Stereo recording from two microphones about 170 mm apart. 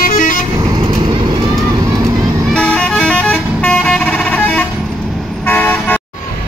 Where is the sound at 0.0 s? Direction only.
55° left (ahead or behind).